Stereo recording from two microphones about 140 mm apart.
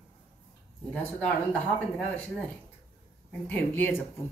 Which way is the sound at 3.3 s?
10° left (ahead or behind).